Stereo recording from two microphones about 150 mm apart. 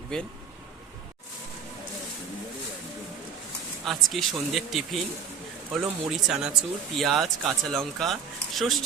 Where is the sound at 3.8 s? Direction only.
Centre (ahead or behind).